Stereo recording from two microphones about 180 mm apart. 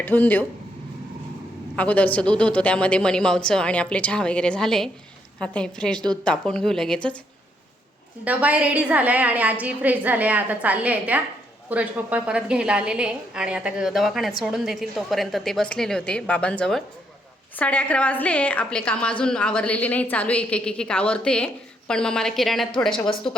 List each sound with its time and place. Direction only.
0.0 s a woman's voice: 10° left (ahead or behind)
1.7 s a woman's voice: 10° left (ahead or behind)
8.2 s a woman's voice: 5° right (ahead or behind)
22.9 s speech: 30° left (ahead or behind)